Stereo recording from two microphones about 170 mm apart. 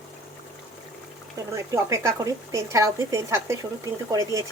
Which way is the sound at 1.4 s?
20° right (ahead or behind).